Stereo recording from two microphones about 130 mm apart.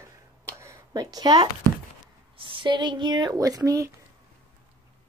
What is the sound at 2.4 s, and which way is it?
Speech, 40° right (ahead or behind).